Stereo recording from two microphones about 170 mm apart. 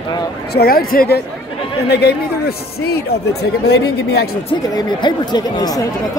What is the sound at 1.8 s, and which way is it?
Speech, 75° left (ahead or behind).